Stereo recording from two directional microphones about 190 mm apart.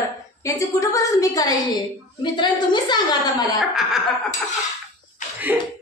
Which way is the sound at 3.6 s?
Centre (ahead or behind).